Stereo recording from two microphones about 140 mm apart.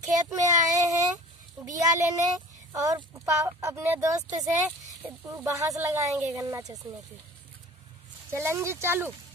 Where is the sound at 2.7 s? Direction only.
25° right (ahead or behind).